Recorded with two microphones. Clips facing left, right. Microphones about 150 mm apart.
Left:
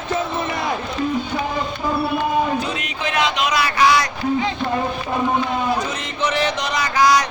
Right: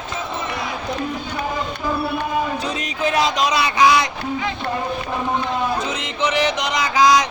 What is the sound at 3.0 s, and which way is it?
Music, 35° right (ahead or behind).